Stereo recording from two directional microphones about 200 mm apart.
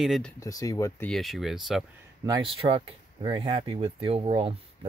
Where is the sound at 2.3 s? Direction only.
25° right (ahead or behind).